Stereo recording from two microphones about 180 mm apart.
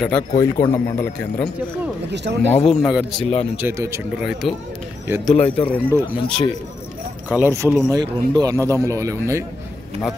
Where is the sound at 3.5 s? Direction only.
15° right (ahead or behind).